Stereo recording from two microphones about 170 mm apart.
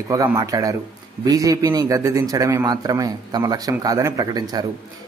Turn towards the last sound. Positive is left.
turn(degrees=-25)  # may be behind; listen again after turning